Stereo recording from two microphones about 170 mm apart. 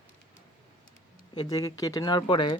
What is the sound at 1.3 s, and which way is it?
Speech, 25° left (ahead or behind).